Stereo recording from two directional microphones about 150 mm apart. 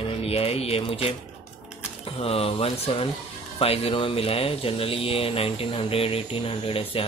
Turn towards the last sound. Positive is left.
turn(degrees=40)  # may be behind; listen again after turning